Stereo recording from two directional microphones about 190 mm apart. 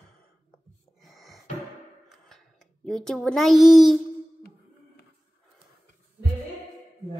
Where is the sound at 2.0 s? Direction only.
Centre (ahead or behind).